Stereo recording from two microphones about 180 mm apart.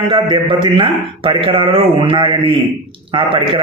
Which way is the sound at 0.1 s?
25° right (ahead or behind).